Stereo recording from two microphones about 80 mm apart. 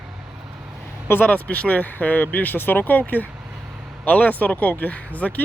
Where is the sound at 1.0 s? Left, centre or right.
Left.